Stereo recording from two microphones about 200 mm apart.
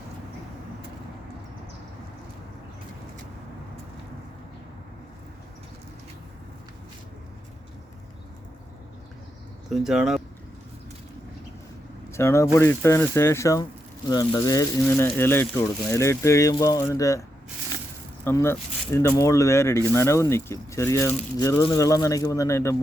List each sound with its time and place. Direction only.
9.6 s speech: centre (ahead or behind)
12.1 s speech: 15° left (ahead or behind)
18.3 s speech: 10° left (ahead or behind)